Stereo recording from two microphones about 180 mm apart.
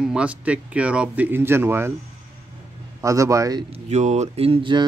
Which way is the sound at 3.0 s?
15° right (ahead or behind).